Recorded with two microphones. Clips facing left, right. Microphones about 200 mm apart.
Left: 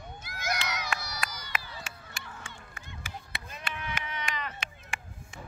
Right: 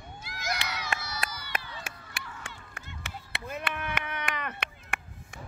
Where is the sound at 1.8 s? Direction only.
60° right (ahead or behind).